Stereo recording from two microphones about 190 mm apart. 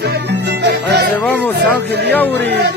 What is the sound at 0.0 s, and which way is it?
Music, 60° right (ahead or behind).